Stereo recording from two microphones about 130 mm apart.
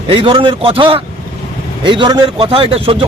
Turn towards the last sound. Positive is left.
turn(degrees=-45)  # may be behind; listen again after turning